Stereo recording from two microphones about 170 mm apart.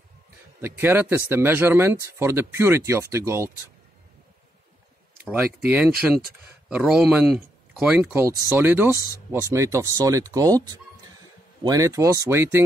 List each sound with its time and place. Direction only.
0.6 s speech: 15° right (ahead or behind)
5.2 s speech: 10° right (ahead or behind)